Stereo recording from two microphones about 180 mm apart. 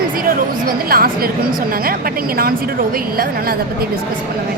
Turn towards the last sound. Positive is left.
turn(degrees=-55)  # may be behind; listen again after turning